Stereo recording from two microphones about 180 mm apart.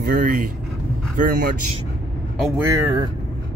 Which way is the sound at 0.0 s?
55° right (ahead or behind).